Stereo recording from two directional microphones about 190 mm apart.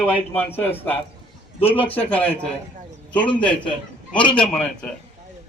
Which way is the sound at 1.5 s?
30° left (ahead or behind).